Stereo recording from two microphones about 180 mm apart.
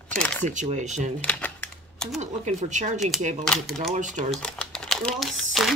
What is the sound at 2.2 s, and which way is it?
Speech, 40° right (ahead or behind).